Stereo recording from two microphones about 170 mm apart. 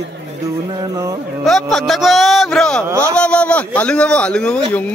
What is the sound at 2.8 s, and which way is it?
Speech, 15° right (ahead or behind).